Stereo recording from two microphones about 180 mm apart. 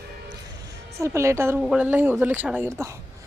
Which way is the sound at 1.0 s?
15° right (ahead or behind).